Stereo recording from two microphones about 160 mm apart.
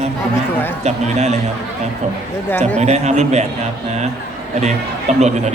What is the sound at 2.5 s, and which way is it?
Speech, 10° left (ahead or behind).